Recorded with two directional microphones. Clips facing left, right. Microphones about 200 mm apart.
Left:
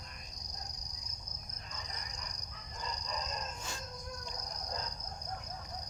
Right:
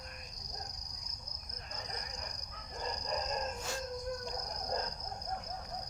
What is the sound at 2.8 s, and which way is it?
Dog, 50° right (ahead or behind).